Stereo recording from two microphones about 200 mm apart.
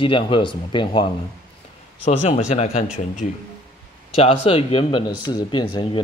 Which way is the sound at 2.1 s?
35° left (ahead or behind).